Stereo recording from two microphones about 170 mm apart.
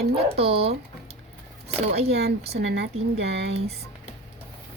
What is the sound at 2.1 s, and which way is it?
Speech, 70° right (ahead or behind).